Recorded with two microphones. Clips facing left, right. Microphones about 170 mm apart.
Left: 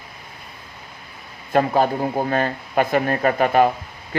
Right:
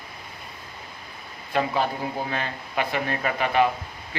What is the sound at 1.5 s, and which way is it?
Speech, 50° left (ahead or behind).